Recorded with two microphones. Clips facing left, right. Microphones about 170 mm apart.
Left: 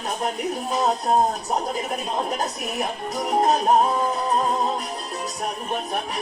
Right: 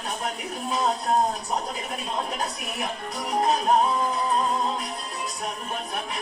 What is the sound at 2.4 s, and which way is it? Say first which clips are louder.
Music: left 4 dB; 40° left (ahead or behind).